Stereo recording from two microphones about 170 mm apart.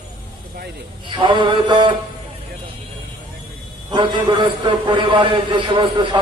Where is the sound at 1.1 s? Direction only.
30° right (ahead or behind).